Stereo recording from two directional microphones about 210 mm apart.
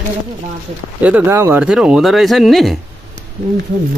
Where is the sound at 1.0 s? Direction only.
10° right (ahead or behind).